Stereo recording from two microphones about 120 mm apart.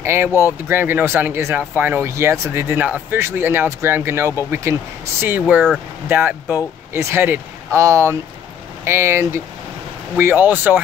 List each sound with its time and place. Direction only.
0.0 s speech: 20° right (ahead or behind)
0.3 s speech: 25° left (ahead or behind)
0.7 s speech: 15° right (ahead or behind)